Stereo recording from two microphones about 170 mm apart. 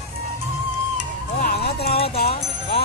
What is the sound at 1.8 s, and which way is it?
Music, 35° left (ahead or behind).